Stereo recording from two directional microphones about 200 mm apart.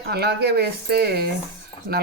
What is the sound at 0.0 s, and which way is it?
Speech, 50° right (ahead or behind).